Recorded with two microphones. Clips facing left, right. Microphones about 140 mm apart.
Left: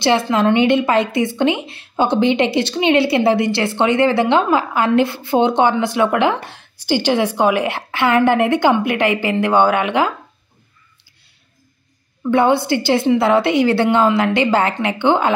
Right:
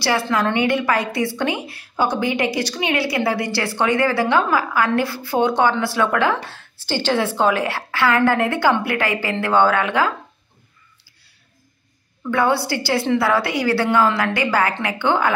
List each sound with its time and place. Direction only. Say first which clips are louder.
0.0 s a woman's voice: left 5 dB; 20° left (ahead or behind)
12.2 s a woman's voice: left 4 dB; 20° left (ahead or behind)